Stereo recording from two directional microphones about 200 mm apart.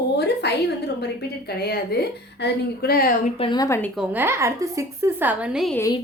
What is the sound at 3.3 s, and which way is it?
Speech, 25° left (ahead or behind).